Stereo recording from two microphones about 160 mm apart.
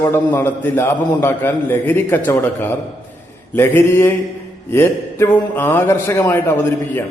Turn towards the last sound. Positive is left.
turn(degrees=15)  # may be behind; listen again after turning